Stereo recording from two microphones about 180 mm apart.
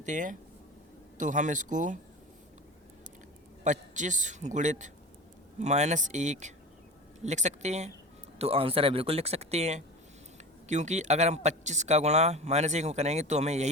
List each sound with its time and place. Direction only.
0.0 s a man's voice: 45° right (ahead or behind)
3.6 s a man's voice: 40° right (ahead or behind)